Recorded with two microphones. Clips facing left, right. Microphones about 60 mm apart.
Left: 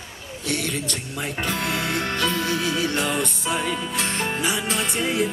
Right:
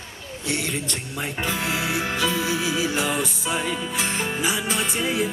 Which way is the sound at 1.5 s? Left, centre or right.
Centre.